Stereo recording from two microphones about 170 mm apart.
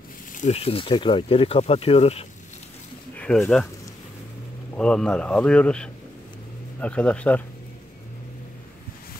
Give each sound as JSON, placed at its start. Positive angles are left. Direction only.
{"t": 0.3, "sound": "speech", "side_deg": 45}
{"t": 3.2, "sound": "speech", "side_deg": 5}
{"t": 4.7, "sound": "speech", "side_deg": 5}